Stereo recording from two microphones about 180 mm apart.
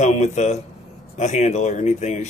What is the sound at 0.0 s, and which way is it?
A man's voice, 40° left (ahead or behind).